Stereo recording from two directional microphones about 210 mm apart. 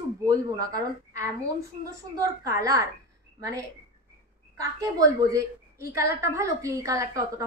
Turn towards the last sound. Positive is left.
turn(degrees=-15)  # may be behind; listen again after turning